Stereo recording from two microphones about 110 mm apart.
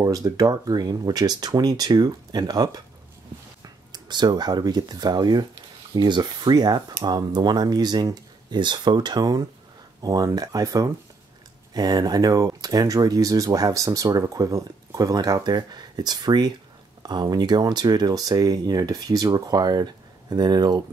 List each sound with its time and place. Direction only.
0.0 s speech: 30° right (ahead or behind)